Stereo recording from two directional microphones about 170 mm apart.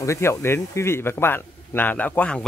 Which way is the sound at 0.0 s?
15° left (ahead or behind).